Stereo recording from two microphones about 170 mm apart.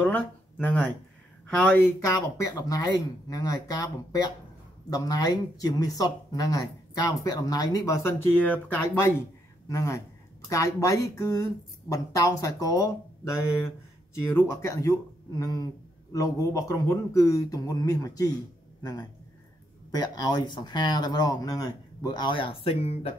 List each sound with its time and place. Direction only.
0.0 s speech: 10° left (ahead or behind)
2.5 s speech: 20° left (ahead or behind)